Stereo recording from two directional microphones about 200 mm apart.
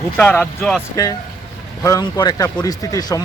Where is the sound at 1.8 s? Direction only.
20° left (ahead or behind).